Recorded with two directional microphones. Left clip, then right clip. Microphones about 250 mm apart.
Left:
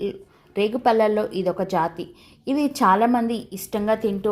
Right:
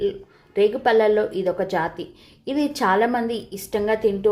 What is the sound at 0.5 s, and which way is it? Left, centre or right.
A woman's voice, left.